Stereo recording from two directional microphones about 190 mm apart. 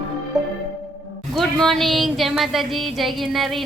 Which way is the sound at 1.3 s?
Centre (ahead or behind).